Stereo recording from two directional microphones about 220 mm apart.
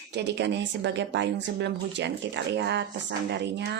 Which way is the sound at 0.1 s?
50° right (ahead or behind).